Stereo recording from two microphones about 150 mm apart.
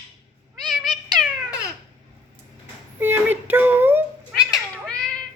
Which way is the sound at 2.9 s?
15° right (ahead or behind).